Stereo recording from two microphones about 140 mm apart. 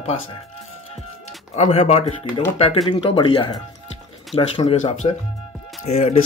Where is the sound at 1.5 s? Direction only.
50° left (ahead or behind).